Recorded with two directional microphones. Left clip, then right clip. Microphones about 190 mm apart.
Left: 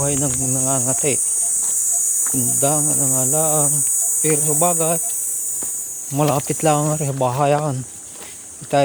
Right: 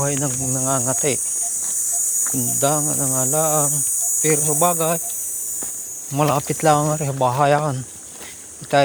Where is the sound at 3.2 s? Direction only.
15° left (ahead or behind).